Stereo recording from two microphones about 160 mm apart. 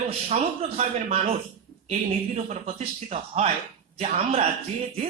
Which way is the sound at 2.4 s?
45° right (ahead or behind).